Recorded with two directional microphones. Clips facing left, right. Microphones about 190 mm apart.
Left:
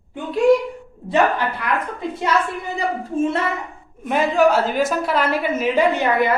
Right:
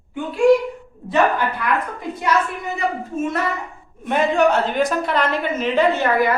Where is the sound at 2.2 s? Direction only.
30° left (ahead or behind).